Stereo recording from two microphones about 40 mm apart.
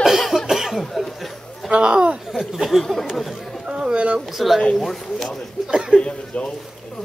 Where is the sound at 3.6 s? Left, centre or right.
Right.